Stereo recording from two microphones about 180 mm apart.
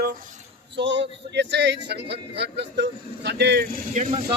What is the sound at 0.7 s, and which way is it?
A man's voice, 80° right.